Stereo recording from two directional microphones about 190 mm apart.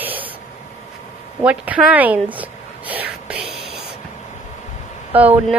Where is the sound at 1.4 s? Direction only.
5° right (ahead or behind).